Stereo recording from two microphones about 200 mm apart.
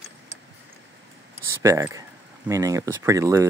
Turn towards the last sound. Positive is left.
turn(degrees=-15)  # may be behind; listen again after turning